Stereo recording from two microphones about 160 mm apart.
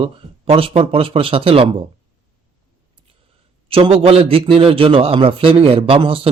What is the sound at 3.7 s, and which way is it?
Speech, 35° right (ahead or behind).